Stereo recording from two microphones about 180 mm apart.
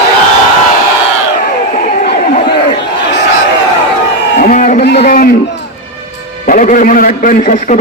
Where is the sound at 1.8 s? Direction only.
50° left (ahead or behind).